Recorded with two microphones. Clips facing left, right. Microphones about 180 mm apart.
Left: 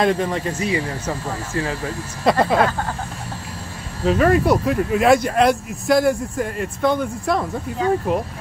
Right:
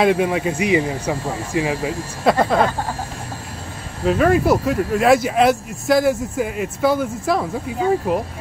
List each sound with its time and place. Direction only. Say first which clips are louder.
0.0 s speech: right 3 dB; 5° right (ahead or behind)
2.2 s speech: even; centre (ahead or behind)
4.0 s speech: even; centre (ahead or behind)